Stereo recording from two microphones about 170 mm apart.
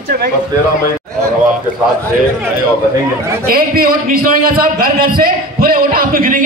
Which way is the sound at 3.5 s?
60° right (ahead or behind).